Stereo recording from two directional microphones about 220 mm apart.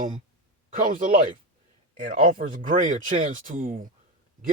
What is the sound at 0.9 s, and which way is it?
Speech, 40° right (ahead or behind).